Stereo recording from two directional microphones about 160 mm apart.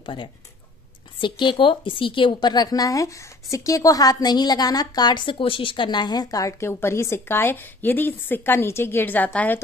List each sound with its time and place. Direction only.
0.0 s a woman's voice: 30° left (ahead or behind); by 9.6 s 10° left (ahead or behind)